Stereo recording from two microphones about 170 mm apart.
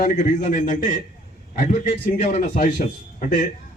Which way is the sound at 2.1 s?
60° left (ahead or behind).